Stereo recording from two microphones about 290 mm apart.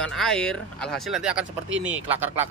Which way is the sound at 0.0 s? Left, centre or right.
Centre.